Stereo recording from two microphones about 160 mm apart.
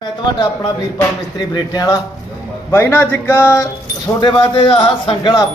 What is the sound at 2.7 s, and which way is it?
Speech, 15° left (ahead or behind).